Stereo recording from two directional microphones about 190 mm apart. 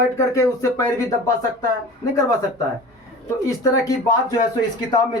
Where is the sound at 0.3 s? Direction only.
15° left (ahead or behind).